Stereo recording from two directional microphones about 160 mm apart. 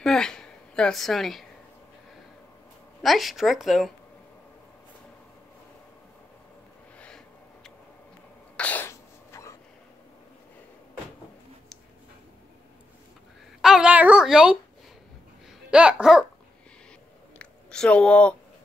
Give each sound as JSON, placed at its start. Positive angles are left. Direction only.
{"t": 0.0, "sound": "a sound", "side_deg": 5}
{"t": 3.0, "sound": "speech", "side_deg": 0}
{"t": 8.5, "sound": "sneeze", "side_deg": 10}
{"t": 13.6, "sound": "babbling", "side_deg": -5}
{"t": 15.7, "sound": "babbling", "side_deg": -5}
{"t": 17.4, "sound": "a sound", "side_deg": 5}